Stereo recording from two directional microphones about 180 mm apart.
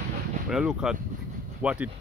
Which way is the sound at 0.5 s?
5° right (ahead or behind).